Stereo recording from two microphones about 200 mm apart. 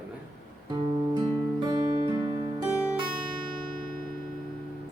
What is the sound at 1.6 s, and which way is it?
Music, 20° right (ahead or behind).